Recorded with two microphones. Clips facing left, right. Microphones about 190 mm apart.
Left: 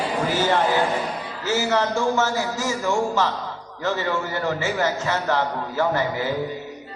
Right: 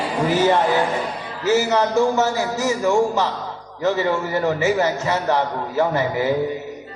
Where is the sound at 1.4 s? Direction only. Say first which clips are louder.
Right 4 dB; 15° right (ahead or behind).